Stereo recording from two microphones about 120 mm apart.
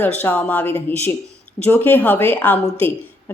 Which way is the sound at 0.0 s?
15° left (ahead or behind).